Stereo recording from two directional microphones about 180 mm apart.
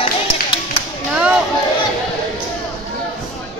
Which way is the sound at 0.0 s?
25° left (ahead or behind).